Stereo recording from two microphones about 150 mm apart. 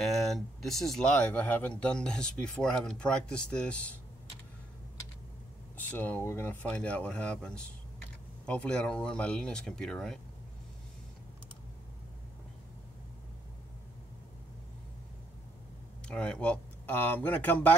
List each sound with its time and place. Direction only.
0.0 s speech: centre (ahead or behind)
5.8 s speech: 10° left (ahead or behind)
16.1 s speech: 5° left (ahead or behind)